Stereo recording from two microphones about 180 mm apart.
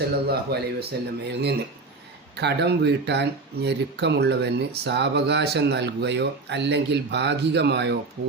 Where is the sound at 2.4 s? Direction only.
70° right (ahead or behind).